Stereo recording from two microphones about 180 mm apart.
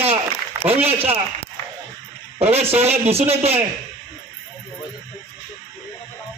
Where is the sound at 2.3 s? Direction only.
35° right (ahead or behind).